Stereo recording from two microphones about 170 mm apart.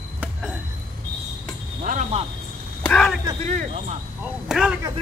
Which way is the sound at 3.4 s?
40° right (ahead or behind).